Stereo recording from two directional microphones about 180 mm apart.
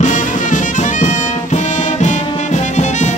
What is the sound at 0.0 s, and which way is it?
Music, 45° left (ahead or behind).